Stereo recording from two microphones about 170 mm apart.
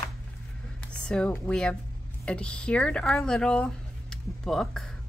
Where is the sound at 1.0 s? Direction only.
5° left (ahead or behind).